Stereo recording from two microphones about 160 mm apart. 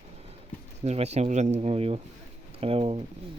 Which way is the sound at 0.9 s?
45° right (ahead or behind).